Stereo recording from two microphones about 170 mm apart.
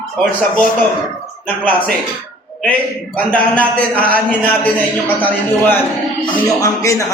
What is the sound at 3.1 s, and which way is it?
Speech, 10° left (ahead or behind).